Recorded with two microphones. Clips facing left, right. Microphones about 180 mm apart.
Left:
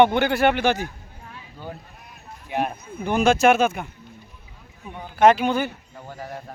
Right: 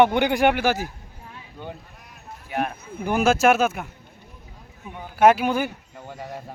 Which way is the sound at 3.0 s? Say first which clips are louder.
Left 1 dB; 10° right (ahead or behind).